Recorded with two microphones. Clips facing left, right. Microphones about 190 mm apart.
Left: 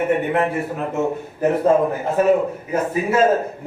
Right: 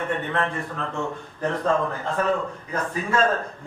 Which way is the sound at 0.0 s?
15° left (ahead or behind).